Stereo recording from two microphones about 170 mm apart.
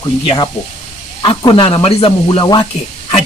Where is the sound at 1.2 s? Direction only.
30° left (ahead or behind).